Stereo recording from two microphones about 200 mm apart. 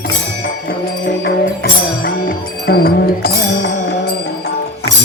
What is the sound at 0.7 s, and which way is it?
Music, 60° left (ahead or behind).